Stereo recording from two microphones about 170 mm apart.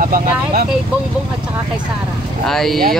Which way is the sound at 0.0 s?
55° right (ahead or behind).